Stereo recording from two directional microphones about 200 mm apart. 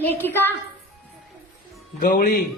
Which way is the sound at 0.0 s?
10° left (ahead or behind).